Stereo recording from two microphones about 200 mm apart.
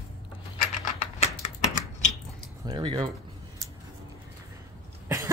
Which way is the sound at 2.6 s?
20° right (ahead or behind).